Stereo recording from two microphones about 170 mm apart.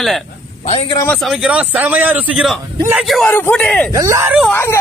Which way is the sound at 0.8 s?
20° left (ahead or behind).